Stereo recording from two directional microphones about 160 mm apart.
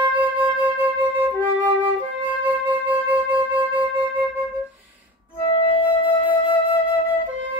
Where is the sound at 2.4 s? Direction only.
10° right (ahead or behind).